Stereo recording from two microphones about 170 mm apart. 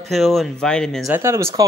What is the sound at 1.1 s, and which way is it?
Speech, 15° right (ahead or behind).